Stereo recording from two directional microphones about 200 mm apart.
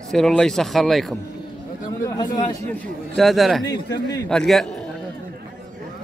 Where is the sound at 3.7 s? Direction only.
60° left (ahead or behind).